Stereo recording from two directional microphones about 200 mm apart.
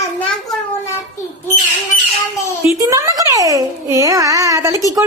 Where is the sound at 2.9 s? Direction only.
15° right (ahead or behind).